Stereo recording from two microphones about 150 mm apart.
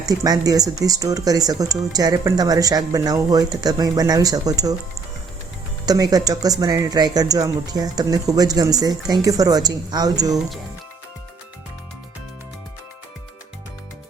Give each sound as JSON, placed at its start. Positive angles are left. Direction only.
{"t": 0.0, "sound": "speech", "side_deg": -25}
{"t": 5.8, "sound": "speech", "side_deg": -25}